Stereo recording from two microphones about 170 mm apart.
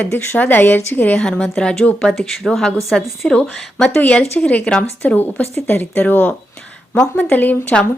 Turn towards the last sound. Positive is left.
turn(degrees=10)  # may be behind; listen again after turning